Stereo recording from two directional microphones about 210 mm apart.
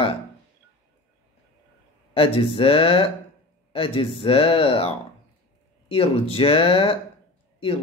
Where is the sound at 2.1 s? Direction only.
25° left (ahead or behind).